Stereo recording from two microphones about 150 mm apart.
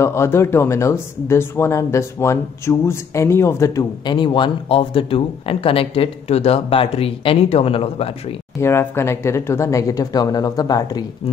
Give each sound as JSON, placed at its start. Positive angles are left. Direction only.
{"t": 0.0, "sound": "speech", "side_deg": 20}
{"t": 8.5, "sound": "speech", "side_deg": 15}